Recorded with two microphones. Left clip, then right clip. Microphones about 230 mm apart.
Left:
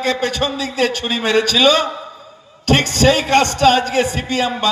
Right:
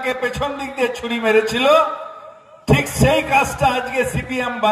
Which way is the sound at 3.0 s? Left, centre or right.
Right.